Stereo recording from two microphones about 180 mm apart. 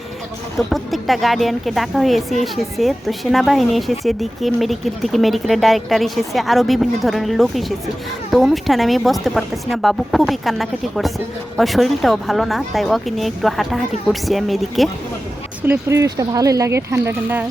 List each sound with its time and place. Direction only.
0.7 s speech: centre (ahead or behind)
15.6 s speech: 15° right (ahead or behind)